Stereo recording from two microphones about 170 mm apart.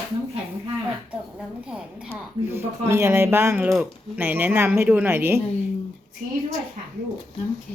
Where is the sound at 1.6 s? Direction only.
5° right (ahead or behind).